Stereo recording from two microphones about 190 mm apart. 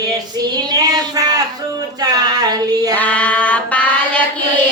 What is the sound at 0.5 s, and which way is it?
Child singing, 20° right (ahead or behind).